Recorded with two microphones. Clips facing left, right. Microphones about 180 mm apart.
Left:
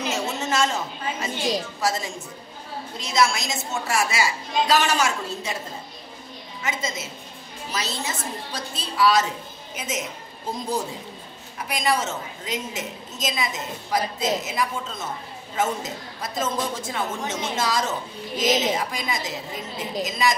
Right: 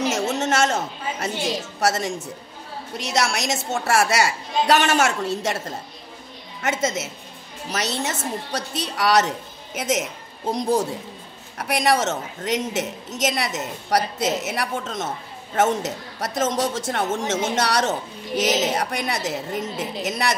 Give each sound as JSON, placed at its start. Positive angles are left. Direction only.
{"t": 0.4, "sound": "a sound", "side_deg": -75}
{"t": 1.2, "sound": "a woman's voice", "side_deg": -75}
{"t": 9.8, "sound": "a woman's voice", "side_deg": -80}